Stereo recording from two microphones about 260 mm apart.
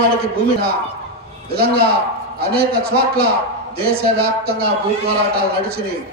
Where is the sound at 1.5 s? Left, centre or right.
Right.